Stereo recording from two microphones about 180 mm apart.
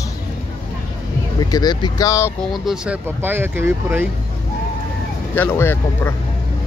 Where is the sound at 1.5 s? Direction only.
20° left (ahead or behind).